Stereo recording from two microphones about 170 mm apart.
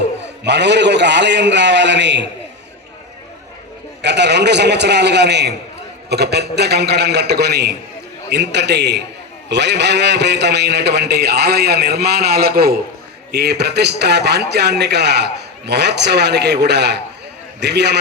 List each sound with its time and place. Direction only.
0.4 s a man's voice: 90° right
4.0 s a man's voice: 90° right; by 7.8 s 75° right (ahead or behind)
8.3 s a man's voice: 85° right